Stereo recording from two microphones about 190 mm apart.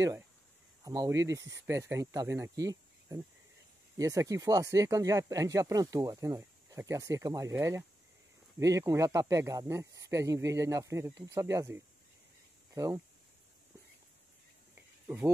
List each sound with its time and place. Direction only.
0.8 s speech: 20° right (ahead or behind)
15.0 s speech: 10° right (ahead or behind)